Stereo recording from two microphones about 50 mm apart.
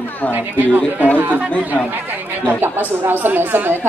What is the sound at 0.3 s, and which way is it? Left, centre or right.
Speech, right.